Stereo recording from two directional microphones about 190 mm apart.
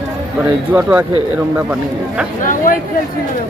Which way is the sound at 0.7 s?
10° right (ahead or behind).